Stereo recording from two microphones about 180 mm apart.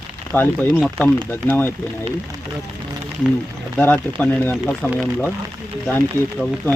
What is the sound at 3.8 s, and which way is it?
Speech, 10° left (ahead or behind).